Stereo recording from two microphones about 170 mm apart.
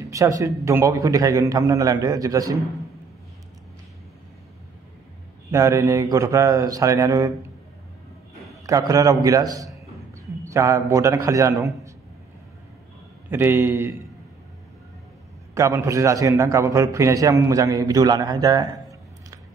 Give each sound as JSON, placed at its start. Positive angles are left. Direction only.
{"t": 0.0, "sound": "a man's voice", "side_deg": -20}
{"t": 5.5, "sound": "a man's voice", "side_deg": -20}
{"t": 8.6, "sound": "a man's voice", "side_deg": -20}
{"t": 13.3, "sound": "a man's voice", "side_deg": -15}
{"t": 15.5, "sound": "a man's voice", "side_deg": -15}